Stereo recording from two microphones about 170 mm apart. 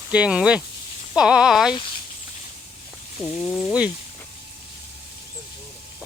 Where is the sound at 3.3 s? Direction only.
5° right (ahead or behind).